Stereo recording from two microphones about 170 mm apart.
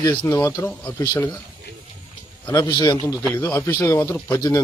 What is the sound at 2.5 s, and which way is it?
A man's voice, 25° left (ahead or behind).